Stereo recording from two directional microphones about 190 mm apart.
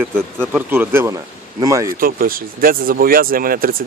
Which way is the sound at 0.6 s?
10° right (ahead or behind).